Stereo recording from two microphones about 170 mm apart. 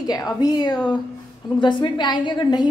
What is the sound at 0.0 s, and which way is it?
A woman's voice, 20° left (ahead or behind).